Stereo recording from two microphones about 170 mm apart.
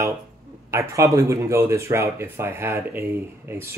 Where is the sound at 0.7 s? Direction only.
15° right (ahead or behind).